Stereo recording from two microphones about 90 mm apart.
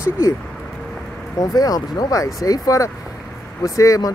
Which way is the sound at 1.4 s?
45° left (ahead or behind).